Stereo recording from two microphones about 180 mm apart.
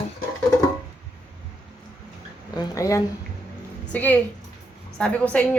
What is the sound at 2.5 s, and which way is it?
A woman's voice, 15° left (ahead or behind).